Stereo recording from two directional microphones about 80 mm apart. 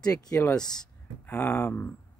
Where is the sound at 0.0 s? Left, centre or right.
Left.